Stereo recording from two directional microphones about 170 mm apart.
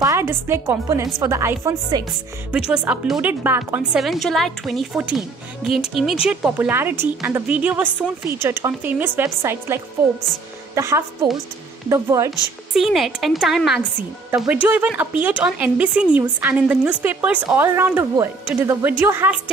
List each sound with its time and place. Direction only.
0.0 s a woman's voice: 15° right (ahead or behind)
2.9 s speech: 10° right (ahead or behind)
4.0 s a woman's voice: centre (ahead or behind); by 12.3 s 15° right (ahead or behind)
12.3 s speech: centre (ahead or behind)